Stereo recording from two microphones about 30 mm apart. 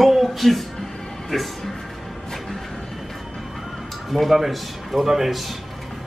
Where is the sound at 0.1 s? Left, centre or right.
Centre.